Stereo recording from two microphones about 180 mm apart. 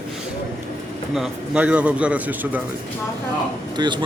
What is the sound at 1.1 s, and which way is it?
A man's voice, 5° right (ahead or behind).